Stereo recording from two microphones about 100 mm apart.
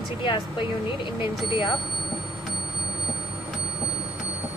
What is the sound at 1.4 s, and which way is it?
Speech, 50° left (ahead or behind).